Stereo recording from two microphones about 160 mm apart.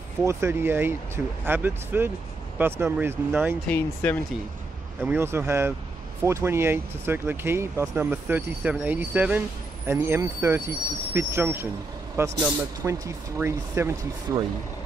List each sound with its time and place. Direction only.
0.2 s speech: 15° right (ahead or behind)
3.6 s speech: 10° left (ahead or behind)
5.0 s speech: 15° right (ahead or behind)